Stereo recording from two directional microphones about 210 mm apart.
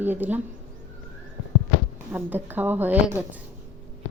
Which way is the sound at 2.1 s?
10° right (ahead or behind).